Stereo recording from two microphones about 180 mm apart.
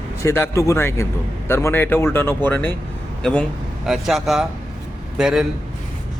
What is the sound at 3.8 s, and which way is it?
A man's voice, centre (ahead or behind).